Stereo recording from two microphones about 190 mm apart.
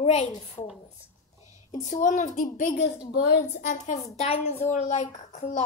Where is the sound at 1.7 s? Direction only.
40° left (ahead or behind).